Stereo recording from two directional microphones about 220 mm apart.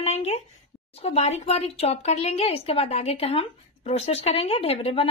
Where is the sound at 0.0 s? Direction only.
30° left (ahead or behind).